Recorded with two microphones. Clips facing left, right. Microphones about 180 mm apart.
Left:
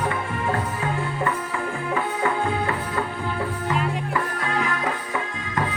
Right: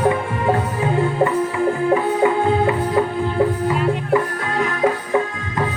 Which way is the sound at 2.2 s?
20° right (ahead or behind).